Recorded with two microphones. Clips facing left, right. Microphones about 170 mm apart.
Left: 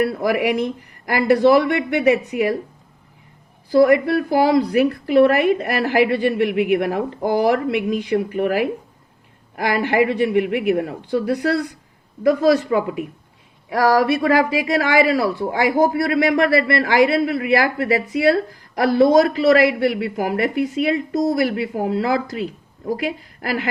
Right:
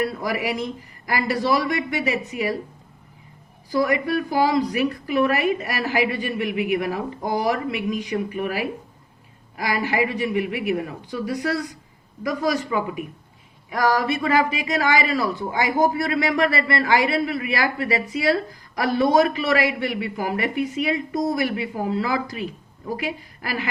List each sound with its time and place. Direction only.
0.0 s speech: 60° left (ahead or behind)
3.7 s a woman's voice: 55° left (ahead or behind)